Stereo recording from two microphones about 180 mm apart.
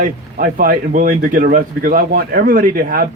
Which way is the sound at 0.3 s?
50° right (ahead or behind).